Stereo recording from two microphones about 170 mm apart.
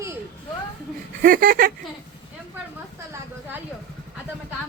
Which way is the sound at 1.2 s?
55° right (ahead or behind).